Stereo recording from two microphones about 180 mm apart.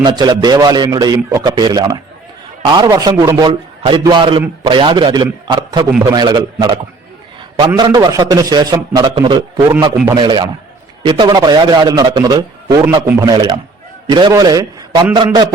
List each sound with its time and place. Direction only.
0.0 s a man's voice: 25° right (ahead or behind)
7.8 s a man's voice: 20° right (ahead or behind)